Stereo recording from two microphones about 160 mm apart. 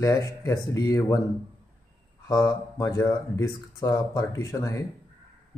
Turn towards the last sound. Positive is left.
turn(degrees=20)  # may be behind; listen again after turning